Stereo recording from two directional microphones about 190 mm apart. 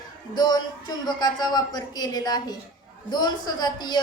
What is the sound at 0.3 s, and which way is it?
A woman's voice, 20° left (ahead or behind).